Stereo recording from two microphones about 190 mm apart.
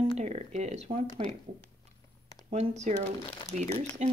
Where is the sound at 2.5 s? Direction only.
35° right (ahead or behind).